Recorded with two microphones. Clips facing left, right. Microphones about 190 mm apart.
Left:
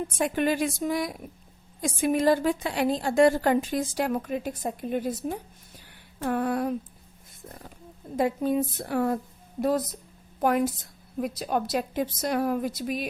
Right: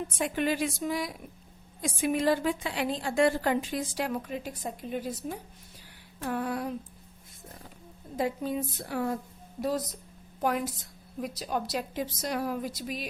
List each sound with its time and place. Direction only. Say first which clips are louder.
0.2 s a woman's voice: left 4 dB; 50° left (ahead or behind)
6.2 s a woman's voice: left 5 dB; 50° left (ahead or behind)
8.1 s a woman's voice: left 5 dB; 55° left (ahead or behind)
11.2 s a woman's voice: left 5 dB; 55° left (ahead or behind)